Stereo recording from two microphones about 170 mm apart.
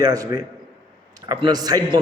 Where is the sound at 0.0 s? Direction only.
20° right (ahead or behind).